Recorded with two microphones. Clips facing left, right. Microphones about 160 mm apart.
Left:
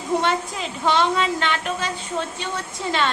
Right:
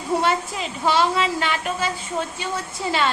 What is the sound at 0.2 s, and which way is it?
Speech, 5° right (ahead or behind).